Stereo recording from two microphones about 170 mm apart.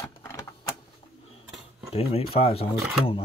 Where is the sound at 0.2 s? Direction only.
15° left (ahead or behind).